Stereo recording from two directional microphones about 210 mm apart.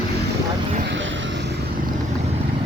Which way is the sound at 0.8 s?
55° right (ahead or behind).